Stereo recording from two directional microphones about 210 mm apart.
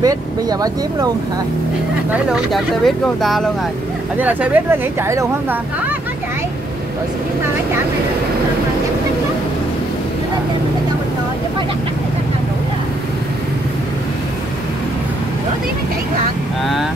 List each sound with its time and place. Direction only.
0.0 s speech: 15° right (ahead or behind)
2.0 s speech: centre (ahead or behind)